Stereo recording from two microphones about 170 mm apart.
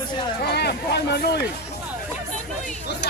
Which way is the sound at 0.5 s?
75° left (ahead or behind).